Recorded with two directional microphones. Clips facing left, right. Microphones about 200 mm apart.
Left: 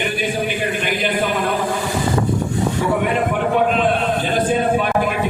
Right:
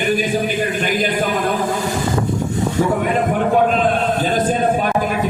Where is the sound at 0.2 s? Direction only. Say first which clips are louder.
Right 2 dB; 40° right (ahead or behind).